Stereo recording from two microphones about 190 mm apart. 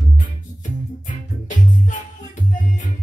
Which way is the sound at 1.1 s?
40° left (ahead or behind).